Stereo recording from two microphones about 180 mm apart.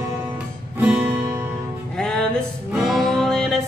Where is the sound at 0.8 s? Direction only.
10° right (ahead or behind).